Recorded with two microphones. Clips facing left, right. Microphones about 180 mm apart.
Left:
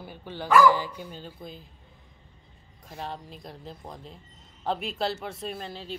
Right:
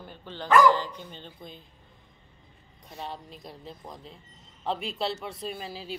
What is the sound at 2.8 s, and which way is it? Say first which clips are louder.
Speech: left 2 dB; centre (ahead or behind).